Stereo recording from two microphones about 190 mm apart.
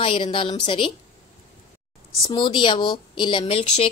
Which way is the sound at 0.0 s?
25° left (ahead or behind).